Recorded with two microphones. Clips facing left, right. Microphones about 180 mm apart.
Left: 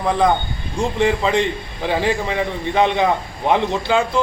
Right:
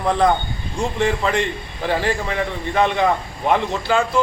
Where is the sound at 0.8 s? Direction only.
15° left (ahead or behind).